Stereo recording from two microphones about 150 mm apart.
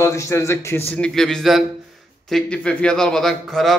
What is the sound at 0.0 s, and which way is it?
A man's voice, 20° left (ahead or behind).